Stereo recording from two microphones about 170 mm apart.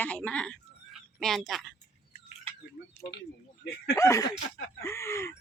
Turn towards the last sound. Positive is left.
turn(degrees=15)  # may be behind; listen again after turning